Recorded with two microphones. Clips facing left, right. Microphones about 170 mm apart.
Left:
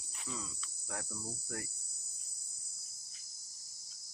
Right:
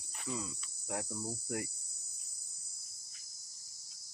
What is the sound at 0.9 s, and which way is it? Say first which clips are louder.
Cricket: right 5 dB; 25° right (ahead or behind).